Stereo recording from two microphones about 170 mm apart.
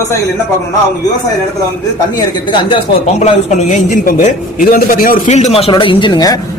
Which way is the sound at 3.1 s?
40° left (ahead or behind).